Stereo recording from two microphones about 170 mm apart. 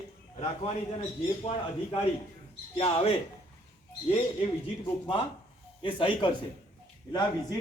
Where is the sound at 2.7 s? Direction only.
35° left (ahead or behind).